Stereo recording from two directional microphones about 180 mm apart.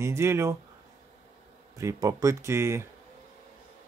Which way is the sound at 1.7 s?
20° right (ahead or behind).